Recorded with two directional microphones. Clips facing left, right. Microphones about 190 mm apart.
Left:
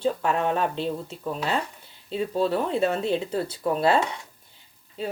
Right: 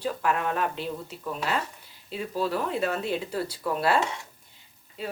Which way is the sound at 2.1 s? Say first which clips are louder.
Left 4 dB; 25° left (ahead or behind).